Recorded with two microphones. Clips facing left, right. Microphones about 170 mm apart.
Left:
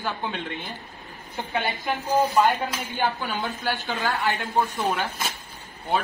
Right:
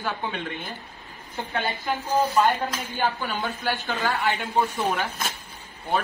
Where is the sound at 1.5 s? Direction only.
20° left (ahead or behind).